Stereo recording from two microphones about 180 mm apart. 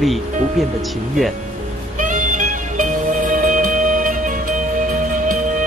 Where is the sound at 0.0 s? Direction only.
Centre (ahead or behind).